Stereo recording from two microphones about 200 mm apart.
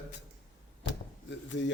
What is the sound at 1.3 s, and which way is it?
Speech, 65° left (ahead or behind).